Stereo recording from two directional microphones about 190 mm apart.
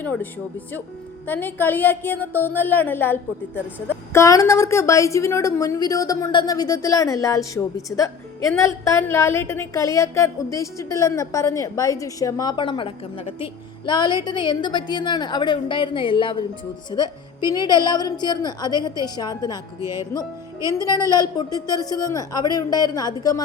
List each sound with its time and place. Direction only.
0.0 s a woman's voice: 10° left (ahead or behind)
1.3 s a woman's voice: 10° left (ahead or behind)
19.8 s music: 15° right (ahead or behind)
20.9 s speech: 20° left (ahead or behind)